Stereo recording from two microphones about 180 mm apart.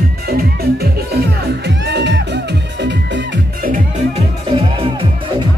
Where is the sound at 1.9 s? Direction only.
70° right (ahead or behind).